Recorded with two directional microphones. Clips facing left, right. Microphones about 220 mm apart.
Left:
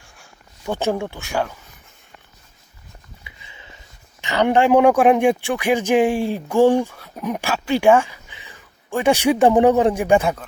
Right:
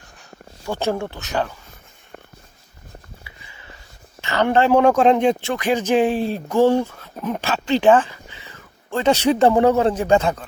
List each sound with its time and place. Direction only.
0.6 s speech: 15° left (ahead or behind)
3.2 s a sound: 20° left (ahead or behind)
4.2 s speech: 15° left (ahead or behind)